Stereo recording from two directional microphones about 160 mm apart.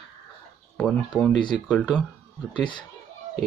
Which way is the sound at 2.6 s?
30° left (ahead or behind).